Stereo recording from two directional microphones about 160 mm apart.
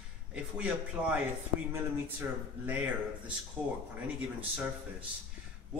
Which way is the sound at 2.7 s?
10° right (ahead or behind).